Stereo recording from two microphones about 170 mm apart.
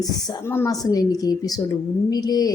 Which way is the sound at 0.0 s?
20° left (ahead or behind).